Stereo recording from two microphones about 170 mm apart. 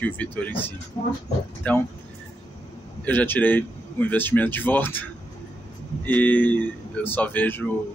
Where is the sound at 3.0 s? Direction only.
10° left (ahead or behind).